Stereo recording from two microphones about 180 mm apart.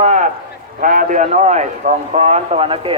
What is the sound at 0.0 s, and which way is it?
Run, 40° right (ahead or behind).